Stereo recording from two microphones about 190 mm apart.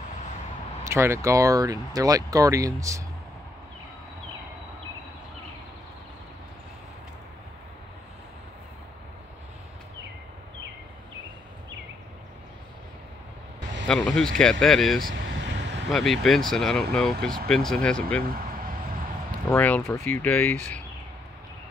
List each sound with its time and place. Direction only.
0.8 s speech: 15° right (ahead or behind)
13.8 s speech: 5° left (ahead or behind)
15.4 s vehicle: 70° right (ahead or behind)
15.9 s speech: centre (ahead or behind)
18.2 s a sound: 50° right (ahead or behind)
19.5 s speech: 10° left (ahead or behind)